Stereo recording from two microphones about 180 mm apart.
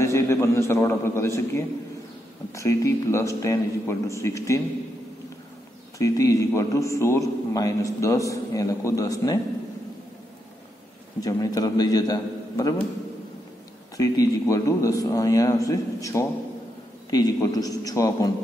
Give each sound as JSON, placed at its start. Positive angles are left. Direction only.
{"t": 0.0, "sound": "a man's voice", "side_deg": 15}
{"t": 5.9, "sound": "a man's voice", "side_deg": 20}
{"t": 11.1, "sound": "a man's voice", "side_deg": 20}
{"t": 13.9, "sound": "a man's voice", "side_deg": 20}